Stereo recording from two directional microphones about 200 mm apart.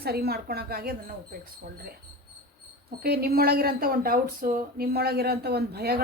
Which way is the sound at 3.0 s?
50° right (ahead or behind).